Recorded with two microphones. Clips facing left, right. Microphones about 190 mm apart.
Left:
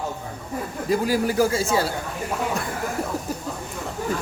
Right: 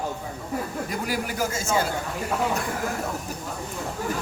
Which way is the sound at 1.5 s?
35° left (ahead or behind).